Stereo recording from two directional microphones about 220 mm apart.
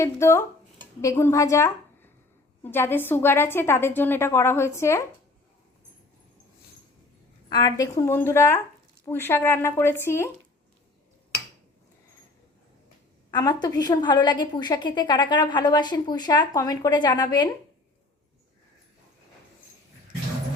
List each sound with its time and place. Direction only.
0.0 s a woman's voice: 10° left (ahead or behind)
7.5 s a woman's voice: 15° left (ahead or behind)
13.3 s a woman's voice: 20° left (ahead or behind)